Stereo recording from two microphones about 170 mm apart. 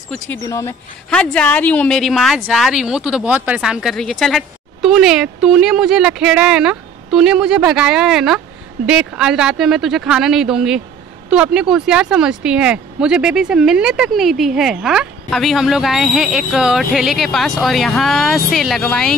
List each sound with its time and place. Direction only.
0.5 s speech: 15° left (ahead or behind)